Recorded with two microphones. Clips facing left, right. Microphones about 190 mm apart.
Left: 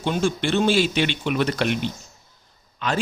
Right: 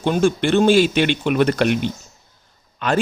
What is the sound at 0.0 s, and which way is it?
Speech, 55° right (ahead or behind).